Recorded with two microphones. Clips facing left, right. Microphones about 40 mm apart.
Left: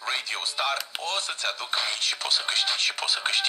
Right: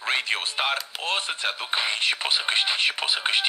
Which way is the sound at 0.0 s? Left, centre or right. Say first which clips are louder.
Right 4 dB; right.